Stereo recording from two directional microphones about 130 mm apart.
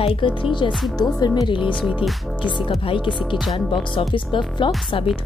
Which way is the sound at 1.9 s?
10° right (ahead or behind).